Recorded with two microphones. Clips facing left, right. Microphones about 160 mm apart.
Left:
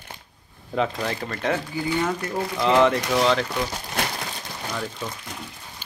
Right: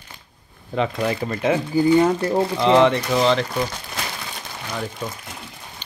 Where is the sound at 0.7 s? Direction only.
Centre (ahead or behind).